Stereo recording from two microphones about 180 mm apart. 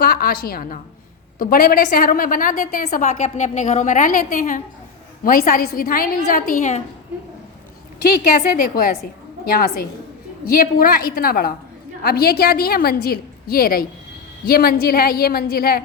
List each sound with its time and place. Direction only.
0.0 s a woman's voice: 55° left (ahead or behind)
8.2 s a woman's voice: 50° left (ahead or behind)